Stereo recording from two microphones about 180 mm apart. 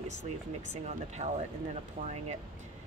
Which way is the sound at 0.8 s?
40° right (ahead or behind).